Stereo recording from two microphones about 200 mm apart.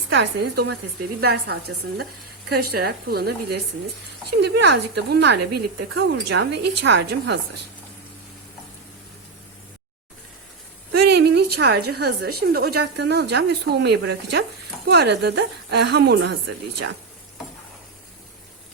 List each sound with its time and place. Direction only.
0.1 s a woman's voice: 60° right (ahead or behind)
11.0 s a woman's voice: 55° right (ahead or behind)